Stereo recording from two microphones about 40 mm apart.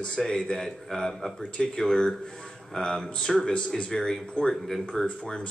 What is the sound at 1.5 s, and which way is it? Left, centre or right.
A man's voice, centre.